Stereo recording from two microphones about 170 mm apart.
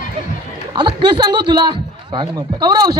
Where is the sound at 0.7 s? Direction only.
25° right (ahead or behind).